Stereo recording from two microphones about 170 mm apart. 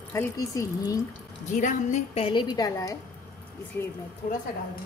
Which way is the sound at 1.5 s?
50° left (ahead or behind).